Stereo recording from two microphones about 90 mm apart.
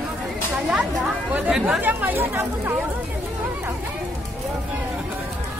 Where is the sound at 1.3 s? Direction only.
15° right (ahead or behind).